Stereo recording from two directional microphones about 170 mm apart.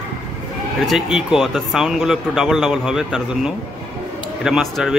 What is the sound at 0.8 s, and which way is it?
Speech, centre (ahead or behind).